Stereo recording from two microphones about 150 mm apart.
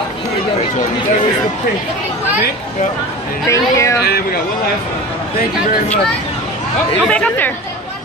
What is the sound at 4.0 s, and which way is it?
Speech, 90° left.